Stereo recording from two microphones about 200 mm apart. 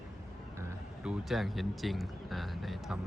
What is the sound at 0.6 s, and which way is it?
Speech, 5° right (ahead or behind).